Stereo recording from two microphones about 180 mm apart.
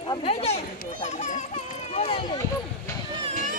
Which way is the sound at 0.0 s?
30° left (ahead or behind).